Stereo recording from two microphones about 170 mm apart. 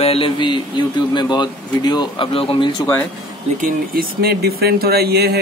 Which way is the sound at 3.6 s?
60° right (ahead or behind).